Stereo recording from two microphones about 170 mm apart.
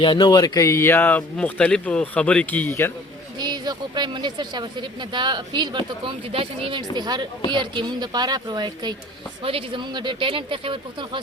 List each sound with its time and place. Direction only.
0.0 s speech: 25° left (ahead or behind)
3.3 s speech: 25° right (ahead or behind)